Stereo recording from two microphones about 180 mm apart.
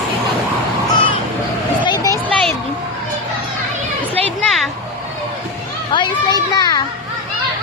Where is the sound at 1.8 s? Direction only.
25° left (ahead or behind).